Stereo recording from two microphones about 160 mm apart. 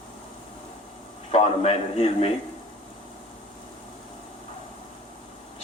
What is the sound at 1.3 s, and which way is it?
Speech, 35° left (ahead or behind).